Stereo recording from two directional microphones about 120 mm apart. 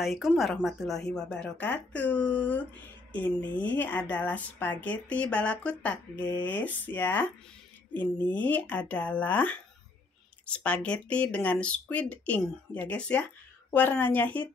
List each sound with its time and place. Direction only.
0.0 s speech: 5° right (ahead or behind); by 14.5 s 15° left (ahead or behind)